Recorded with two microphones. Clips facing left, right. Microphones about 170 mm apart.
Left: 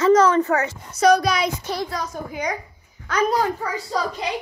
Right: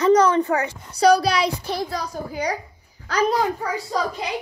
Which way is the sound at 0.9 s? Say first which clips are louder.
Even; 30° right (ahead or behind).